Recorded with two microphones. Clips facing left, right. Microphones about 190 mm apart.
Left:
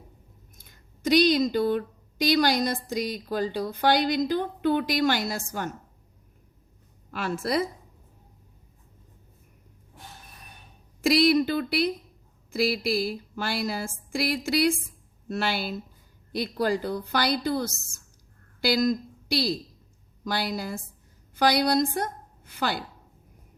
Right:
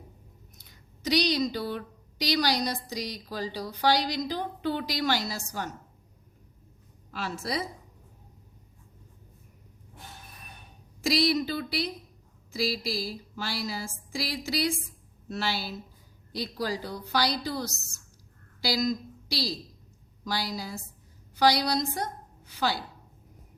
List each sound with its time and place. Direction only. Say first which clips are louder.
0.5 s a woman's voice: even; 50° left (ahead or behind)
7.1 s a woman's voice: left 5 dB; 55° left (ahead or behind)
11.0 s a woman's voice: left 5 dB; 55° left (ahead or behind)